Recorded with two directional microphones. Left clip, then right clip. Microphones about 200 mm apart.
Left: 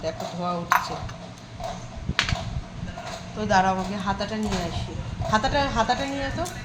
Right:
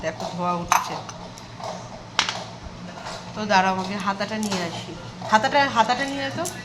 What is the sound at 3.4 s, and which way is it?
Speech, 5° right (ahead or behind).